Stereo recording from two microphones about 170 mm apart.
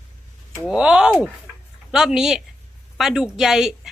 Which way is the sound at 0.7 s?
5° right (ahead or behind).